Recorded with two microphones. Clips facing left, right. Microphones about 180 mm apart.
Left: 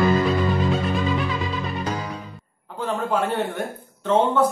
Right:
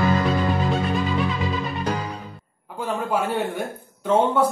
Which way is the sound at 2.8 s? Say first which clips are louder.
Left 1 dB; 10° right (ahead or behind).